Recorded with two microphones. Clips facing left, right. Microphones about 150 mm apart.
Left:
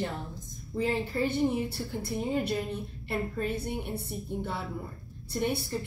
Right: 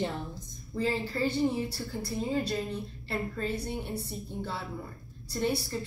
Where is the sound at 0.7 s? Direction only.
15° left (ahead or behind).